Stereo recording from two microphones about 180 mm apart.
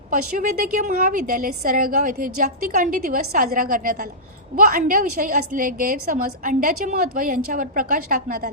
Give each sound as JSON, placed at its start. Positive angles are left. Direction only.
{"t": 0.1, "sound": "a woman's voice", "side_deg": -50}